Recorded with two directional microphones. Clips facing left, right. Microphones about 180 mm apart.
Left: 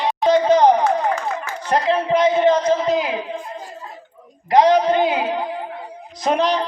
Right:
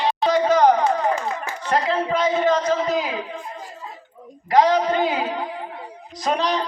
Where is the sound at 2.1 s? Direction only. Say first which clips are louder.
Left 5 dB; 20° left (ahead or behind).